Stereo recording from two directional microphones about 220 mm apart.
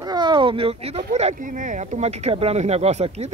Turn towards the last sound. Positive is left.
turn(degrees=-30)  # may be behind; listen again after turning